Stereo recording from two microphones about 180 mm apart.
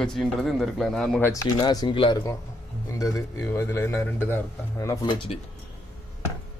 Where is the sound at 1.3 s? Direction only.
20° left (ahead or behind).